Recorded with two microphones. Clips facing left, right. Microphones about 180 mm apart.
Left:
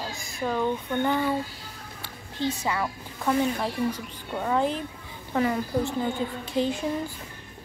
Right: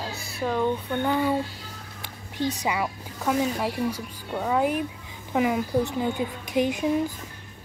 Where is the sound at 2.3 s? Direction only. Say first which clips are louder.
Right 1 dB; 15° right (ahead or behind).